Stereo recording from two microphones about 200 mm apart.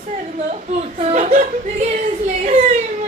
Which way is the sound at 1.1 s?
40° right (ahead or behind).